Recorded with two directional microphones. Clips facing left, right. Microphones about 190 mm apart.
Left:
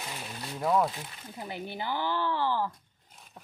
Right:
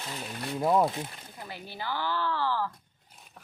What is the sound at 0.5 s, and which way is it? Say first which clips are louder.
Speech: right 2 dB; 20° right (ahead or behind).